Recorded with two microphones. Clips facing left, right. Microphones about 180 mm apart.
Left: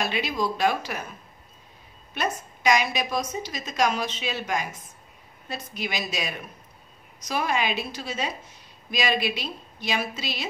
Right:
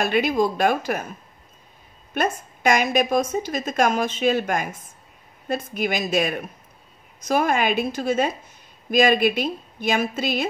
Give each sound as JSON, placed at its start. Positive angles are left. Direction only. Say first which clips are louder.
{"t": 0.0, "sound": "a woman's voice", "louder": "right 7 dB", "side_deg": -50}
{"t": 2.1, "sound": "a woman's voice", "louder": "right 5 dB", "side_deg": -50}